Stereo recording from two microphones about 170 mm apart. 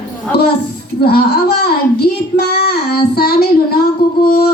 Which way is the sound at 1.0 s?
65° left (ahead or behind).